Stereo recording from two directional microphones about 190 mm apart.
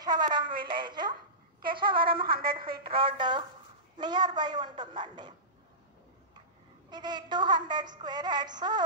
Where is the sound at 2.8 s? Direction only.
30° right (ahead or behind).